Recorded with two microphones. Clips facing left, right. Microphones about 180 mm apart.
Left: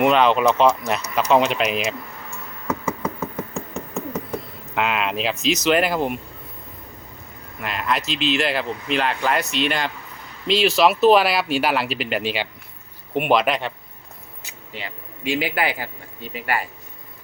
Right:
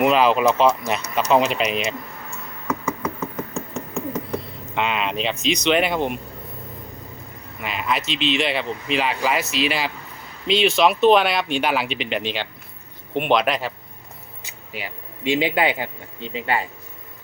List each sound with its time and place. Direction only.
0.0 s speech: 5° right (ahead or behind)
4.7 s speech: 5° left (ahead or behind)
7.6 s speech: centre (ahead or behind)
14.7 s speech: 10° right (ahead or behind)
15.2 s speech: 20° right (ahead or behind)